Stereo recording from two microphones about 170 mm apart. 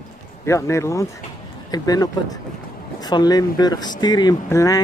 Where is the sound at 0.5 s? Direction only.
15° left (ahead or behind).